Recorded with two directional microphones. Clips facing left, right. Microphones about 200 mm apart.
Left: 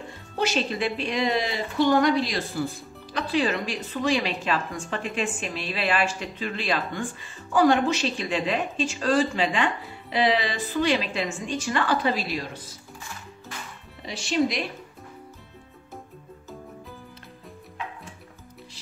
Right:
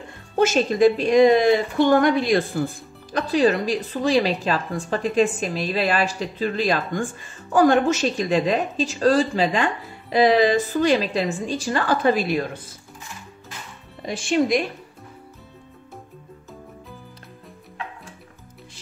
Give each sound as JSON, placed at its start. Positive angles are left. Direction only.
{"t": 0.4, "sound": "a woman's voice", "side_deg": -45}
{"t": 14.0, "sound": "a woman's voice", "side_deg": -50}